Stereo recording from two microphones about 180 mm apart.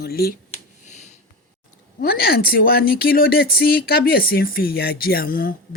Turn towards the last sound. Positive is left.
turn(degrees=55)  # may be behind; listen again after turning